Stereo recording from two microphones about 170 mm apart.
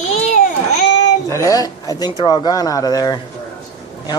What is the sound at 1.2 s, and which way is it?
Speech, 20° left (ahead or behind).